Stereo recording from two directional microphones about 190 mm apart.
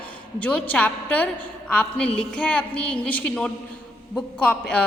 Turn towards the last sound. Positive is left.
turn(degrees=5)  # may be behind; listen again after turning